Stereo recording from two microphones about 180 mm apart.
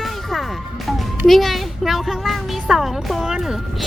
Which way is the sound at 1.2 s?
Centre (ahead or behind).